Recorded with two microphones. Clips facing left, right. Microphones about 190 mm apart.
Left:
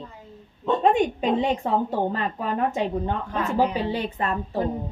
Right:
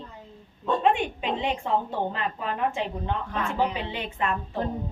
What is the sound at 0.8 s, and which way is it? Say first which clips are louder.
A woman's voice: left 5 dB; 40° left (ahead or behind).